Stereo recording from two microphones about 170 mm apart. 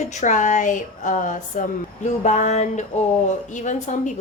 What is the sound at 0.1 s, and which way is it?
A woman's voice, 45° left (ahead or behind).